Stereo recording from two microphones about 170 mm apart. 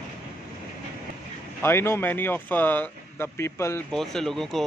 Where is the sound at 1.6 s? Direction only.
15° left (ahead or behind).